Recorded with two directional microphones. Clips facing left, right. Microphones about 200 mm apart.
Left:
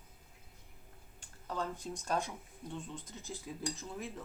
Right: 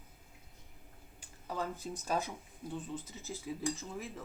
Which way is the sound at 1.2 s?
5° right (ahead or behind).